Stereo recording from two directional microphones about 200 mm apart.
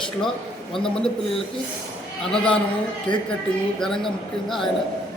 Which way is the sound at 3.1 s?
25° left (ahead or behind).